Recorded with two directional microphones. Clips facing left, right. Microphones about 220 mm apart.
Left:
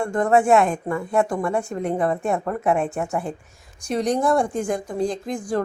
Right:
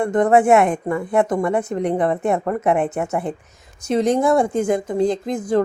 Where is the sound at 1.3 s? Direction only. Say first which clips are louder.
Right 4 dB; 20° right (ahead or behind).